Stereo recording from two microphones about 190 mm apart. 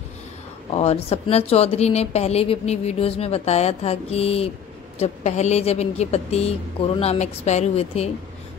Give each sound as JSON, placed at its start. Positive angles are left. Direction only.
{"t": 0.7, "sound": "a woman's voice", "side_deg": 30}